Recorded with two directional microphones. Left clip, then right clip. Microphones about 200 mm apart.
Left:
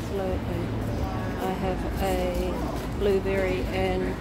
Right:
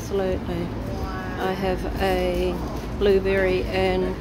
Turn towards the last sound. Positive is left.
turn(degrees=-30)  # may be behind; listen again after turning